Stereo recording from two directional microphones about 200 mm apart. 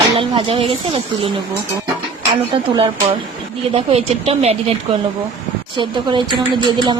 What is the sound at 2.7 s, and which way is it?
Speech, 25° right (ahead or behind).